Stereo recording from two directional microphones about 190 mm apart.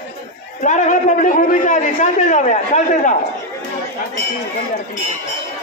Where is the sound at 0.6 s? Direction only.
40° left (ahead or behind).